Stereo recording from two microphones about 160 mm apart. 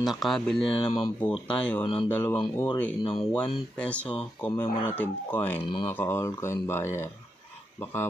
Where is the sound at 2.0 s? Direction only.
10° left (ahead or behind).